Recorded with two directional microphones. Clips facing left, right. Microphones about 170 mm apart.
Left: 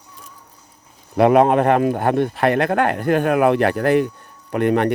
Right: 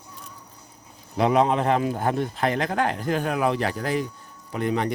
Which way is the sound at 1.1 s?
60° left (ahead or behind).